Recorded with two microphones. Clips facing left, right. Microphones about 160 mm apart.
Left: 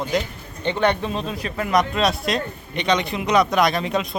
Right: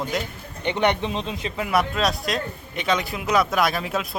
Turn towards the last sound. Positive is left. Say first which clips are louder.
# left 3 dB
turn(degrees=-5)  # may be behind; listen again after turning